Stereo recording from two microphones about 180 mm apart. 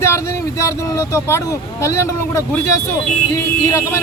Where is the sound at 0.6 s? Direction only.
15° left (ahead or behind).